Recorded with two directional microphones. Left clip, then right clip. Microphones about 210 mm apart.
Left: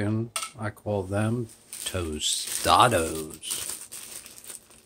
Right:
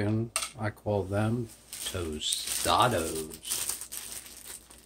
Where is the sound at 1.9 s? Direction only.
35° left (ahead or behind).